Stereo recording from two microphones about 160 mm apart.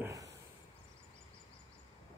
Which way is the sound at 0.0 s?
20° right (ahead or behind).